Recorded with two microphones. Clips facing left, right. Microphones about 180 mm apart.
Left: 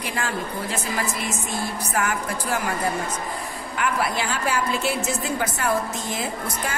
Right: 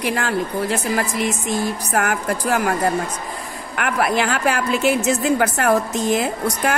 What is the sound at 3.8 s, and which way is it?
A woman's voice, 60° right (ahead or behind).